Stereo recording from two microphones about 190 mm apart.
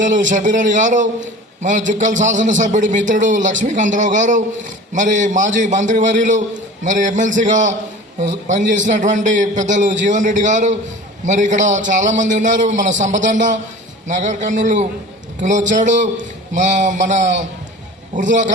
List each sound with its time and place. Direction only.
0.0 s a man's voice: 40° right (ahead or behind)